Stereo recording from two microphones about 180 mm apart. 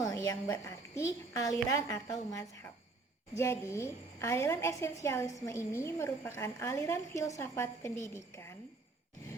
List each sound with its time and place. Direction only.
0.0 s a woman's voice: 15° left (ahead or behind)